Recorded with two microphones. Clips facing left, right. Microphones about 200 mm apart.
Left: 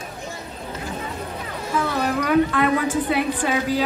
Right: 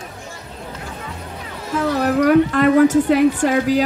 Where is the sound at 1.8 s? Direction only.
45° right (ahead or behind).